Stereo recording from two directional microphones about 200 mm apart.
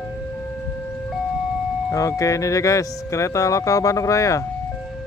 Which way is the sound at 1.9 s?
15° left (ahead or behind).